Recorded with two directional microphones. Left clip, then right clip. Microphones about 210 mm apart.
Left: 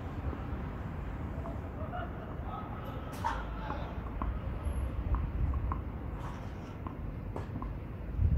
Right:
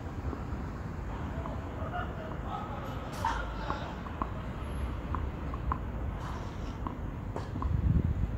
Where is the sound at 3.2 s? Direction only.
20° left (ahead or behind).